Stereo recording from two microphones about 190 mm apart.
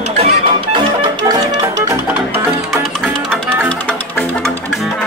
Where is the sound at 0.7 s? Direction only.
20° right (ahead or behind).